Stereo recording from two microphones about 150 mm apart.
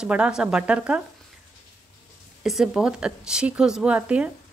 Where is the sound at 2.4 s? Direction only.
Centre (ahead or behind).